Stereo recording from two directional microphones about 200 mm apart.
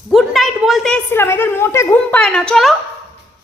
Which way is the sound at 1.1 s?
10° left (ahead or behind).